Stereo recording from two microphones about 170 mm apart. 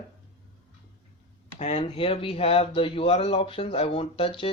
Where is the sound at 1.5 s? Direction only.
40° left (ahead or behind).